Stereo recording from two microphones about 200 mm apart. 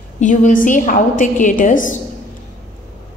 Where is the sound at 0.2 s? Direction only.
40° left (ahead or behind).